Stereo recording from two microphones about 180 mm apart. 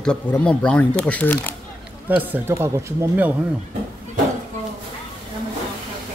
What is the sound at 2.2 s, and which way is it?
Speech, 10° right (ahead or behind).